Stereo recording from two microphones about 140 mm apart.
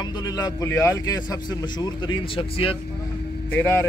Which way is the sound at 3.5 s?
15° left (ahead or behind).